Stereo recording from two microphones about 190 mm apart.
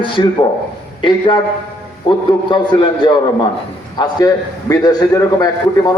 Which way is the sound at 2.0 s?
25° left (ahead or behind).